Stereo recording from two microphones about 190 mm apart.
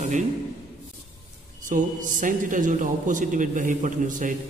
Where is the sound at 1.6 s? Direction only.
45° right (ahead or behind).